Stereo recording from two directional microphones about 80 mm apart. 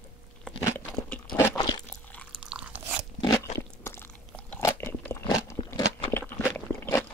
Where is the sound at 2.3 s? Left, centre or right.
Centre.